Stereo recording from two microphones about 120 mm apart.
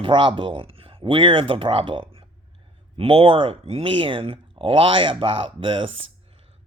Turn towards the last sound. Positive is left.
turn(degrees=-45)  # may be behind; listen again after turning